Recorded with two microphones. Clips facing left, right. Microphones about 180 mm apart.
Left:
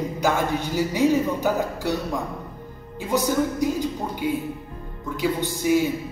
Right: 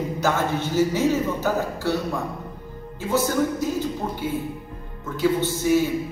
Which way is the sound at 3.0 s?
15° left (ahead or behind).